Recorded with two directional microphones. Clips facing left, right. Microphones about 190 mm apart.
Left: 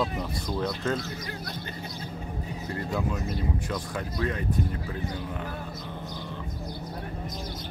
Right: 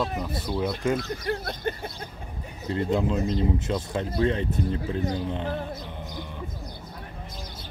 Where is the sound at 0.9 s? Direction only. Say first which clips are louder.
Right 5 dB; 55° right (ahead or behind).